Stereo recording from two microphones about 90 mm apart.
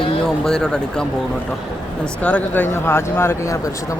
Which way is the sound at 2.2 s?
20° left (ahead or behind).